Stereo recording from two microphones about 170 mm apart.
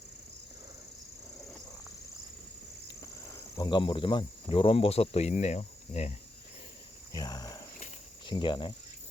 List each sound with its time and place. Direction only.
1.4 s a sound: centre (ahead or behind)
3.0 s cricket: 15° left (ahead or behind); by 6.1 s 45° left (ahead or behind)
7.1 s cricket: 25° left (ahead or behind)
8.3 s speech: 25° left (ahead or behind)